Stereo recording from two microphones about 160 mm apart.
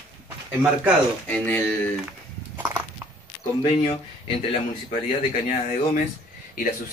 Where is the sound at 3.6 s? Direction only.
40° left (ahead or behind).